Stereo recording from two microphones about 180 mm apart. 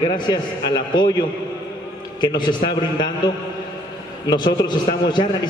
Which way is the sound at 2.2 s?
25° left (ahead or behind).